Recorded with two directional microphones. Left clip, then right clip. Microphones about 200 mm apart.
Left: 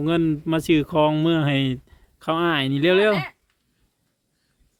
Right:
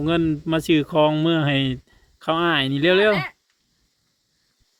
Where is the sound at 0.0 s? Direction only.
Centre (ahead or behind).